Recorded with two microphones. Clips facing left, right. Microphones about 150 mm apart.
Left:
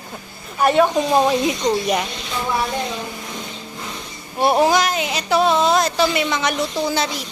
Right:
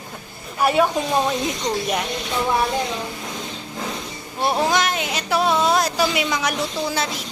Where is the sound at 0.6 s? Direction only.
5° right (ahead or behind).